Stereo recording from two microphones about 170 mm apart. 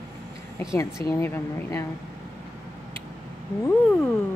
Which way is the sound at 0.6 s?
15° left (ahead or behind).